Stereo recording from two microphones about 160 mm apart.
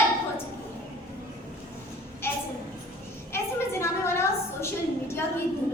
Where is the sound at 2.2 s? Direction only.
15° left (ahead or behind).